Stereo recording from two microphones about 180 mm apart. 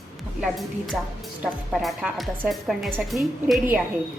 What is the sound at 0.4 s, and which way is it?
A woman's voice, centre (ahead or behind).